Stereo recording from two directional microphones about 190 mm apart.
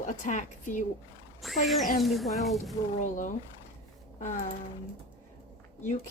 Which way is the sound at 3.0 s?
45° left (ahead or behind).